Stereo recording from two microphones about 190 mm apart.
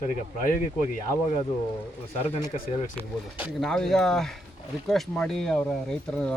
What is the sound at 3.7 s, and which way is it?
Speech, 5° left (ahead or behind).